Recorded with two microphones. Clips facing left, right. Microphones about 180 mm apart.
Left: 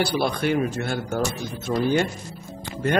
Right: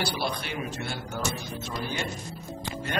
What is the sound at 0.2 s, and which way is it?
A man's voice, 50° left (ahead or behind).